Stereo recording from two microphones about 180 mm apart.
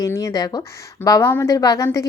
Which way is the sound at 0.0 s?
20° left (ahead or behind).